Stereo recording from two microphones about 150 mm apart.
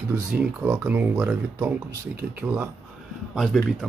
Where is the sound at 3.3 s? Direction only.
Centre (ahead or behind).